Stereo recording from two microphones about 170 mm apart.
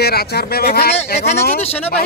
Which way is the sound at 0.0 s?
70° left (ahead or behind).